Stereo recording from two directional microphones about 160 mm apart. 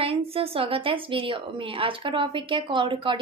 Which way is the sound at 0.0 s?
35° right (ahead or behind).